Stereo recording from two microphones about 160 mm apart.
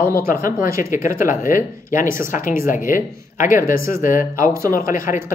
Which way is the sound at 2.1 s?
15° right (ahead or behind).